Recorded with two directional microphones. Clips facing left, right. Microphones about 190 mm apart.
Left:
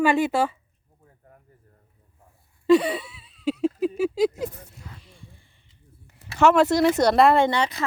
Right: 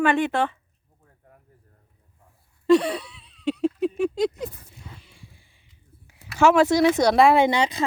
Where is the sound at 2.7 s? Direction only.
Centre (ahead or behind).